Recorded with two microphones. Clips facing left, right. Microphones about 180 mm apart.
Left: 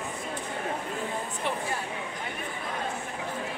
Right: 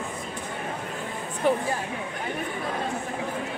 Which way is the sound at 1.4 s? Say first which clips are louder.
Right 10 dB; 45° right (ahead or behind).